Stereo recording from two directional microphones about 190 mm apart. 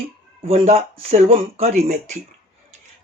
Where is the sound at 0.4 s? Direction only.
35° right (ahead or behind).